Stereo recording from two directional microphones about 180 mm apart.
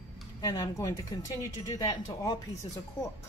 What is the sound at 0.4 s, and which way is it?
Speech, 20° left (ahead or behind).